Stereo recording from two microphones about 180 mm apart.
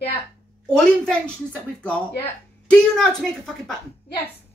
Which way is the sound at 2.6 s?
5° left (ahead or behind).